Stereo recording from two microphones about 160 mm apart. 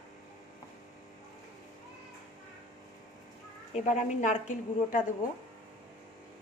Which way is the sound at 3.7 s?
45° left (ahead or behind).